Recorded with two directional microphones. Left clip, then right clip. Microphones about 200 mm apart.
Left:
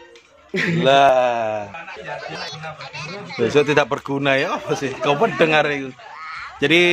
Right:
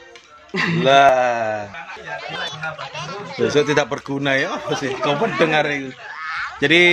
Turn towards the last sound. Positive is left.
turn(degrees=5)  # may be behind; listen again after turning